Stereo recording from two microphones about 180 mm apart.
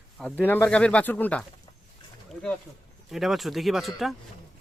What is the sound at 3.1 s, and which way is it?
Speech, centre (ahead or behind).